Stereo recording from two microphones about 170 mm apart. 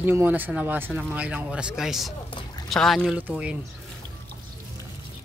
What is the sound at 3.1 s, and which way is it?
Speech, 10° right (ahead or behind).